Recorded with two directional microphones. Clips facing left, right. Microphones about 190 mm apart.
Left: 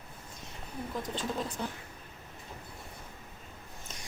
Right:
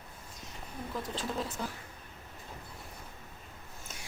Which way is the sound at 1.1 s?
Centre (ahead or behind).